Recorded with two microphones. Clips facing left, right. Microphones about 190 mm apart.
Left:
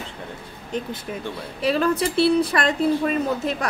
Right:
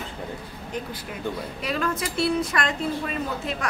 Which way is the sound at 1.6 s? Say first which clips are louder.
Left 8 dB; 30° left (ahead or behind).